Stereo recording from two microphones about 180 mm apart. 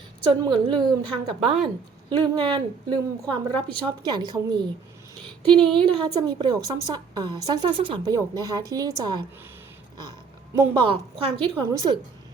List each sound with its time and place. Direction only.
0.3 s a woman's voice: 25° right (ahead or behind)
3.2 s a woman's voice: 5° left (ahead or behind)
4.0 s a woman's voice: 25° right (ahead or behind)
5.5 s a sound: 5° left (ahead or behind)
5.8 s a woman's voice: 25° right (ahead or behind)
10.0 s a sound: 20° right (ahead or behind)
11.3 s a woman's voice: 25° right (ahead or behind)